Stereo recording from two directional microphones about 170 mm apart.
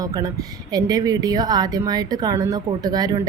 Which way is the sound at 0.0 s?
20° right (ahead or behind).